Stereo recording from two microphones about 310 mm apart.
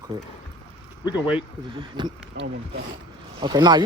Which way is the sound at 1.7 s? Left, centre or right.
Centre.